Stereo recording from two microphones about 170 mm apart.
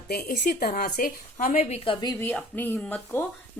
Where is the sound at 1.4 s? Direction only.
40° left (ahead or behind).